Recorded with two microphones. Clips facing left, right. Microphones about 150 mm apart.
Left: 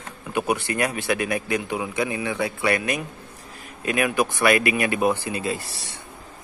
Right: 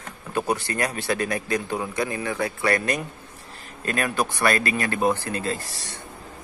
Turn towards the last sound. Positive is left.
turn(degrees=15)  # may be behind; listen again after turning